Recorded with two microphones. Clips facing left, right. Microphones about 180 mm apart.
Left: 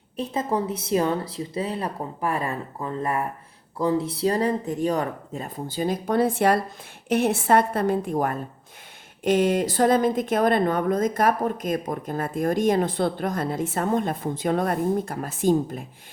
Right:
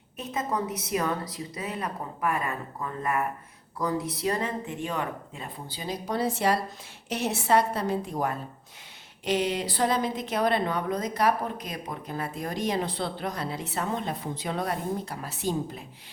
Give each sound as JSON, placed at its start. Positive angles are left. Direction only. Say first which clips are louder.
{"t": 0.2, "sound": "a woman's voice", "louder": "left 5 dB", "side_deg": 30}